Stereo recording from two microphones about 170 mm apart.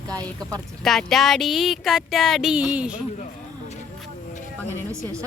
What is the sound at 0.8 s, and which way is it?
Speech, centre (ahead or behind).